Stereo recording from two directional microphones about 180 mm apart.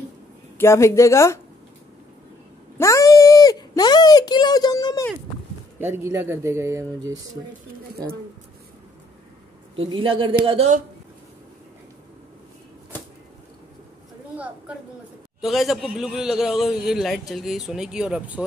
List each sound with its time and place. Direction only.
0.6 s speech: 15° left (ahead or behind)
2.8 s a sound: 15° left (ahead or behind)
5.8 s speech: 15° right (ahead or behind)
9.8 s a man's voice: 30° right (ahead or behind)
14.3 s a sound: 5° right (ahead or behind)
15.4 s a man's voice: centre (ahead or behind)